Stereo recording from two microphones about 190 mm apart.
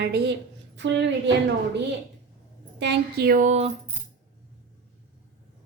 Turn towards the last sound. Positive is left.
turn(degrees=-35)  # may be behind; listen again after turning